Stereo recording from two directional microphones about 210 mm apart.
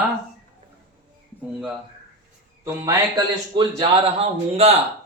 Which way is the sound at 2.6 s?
20° right (ahead or behind).